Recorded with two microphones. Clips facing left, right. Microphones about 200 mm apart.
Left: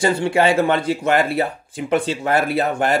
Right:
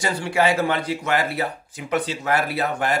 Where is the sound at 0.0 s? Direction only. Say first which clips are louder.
Left 5 dB; 25° left (ahead or behind).